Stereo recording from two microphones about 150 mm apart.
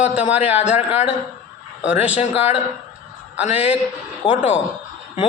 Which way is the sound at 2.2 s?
40° left (ahead or behind).